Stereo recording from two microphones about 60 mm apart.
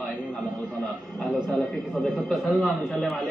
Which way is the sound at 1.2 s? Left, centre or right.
Centre.